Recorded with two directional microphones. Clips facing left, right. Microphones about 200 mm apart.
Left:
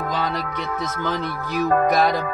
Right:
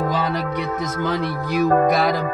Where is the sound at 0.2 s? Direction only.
10° right (ahead or behind).